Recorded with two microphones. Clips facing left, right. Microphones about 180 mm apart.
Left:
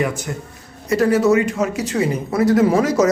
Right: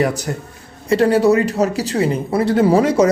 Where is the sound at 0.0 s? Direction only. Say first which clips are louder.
Right 3 dB; 35° right (ahead or behind).